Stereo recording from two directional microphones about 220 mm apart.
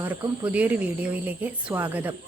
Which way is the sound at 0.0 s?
5° right (ahead or behind).